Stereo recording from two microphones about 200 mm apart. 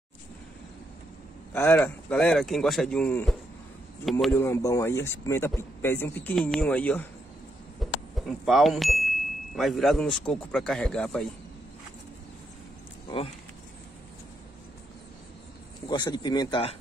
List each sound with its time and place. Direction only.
1.5 s speech: 5° left (ahead or behind)
4.4 s speech: 15° left (ahead or behind)
7.8 s a sound: centre (ahead or behind)
9.6 s speech: centre (ahead or behind)
15.9 s speech: 20° left (ahead or behind)